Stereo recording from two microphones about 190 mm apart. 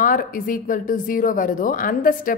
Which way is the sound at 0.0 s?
45° left (ahead or behind).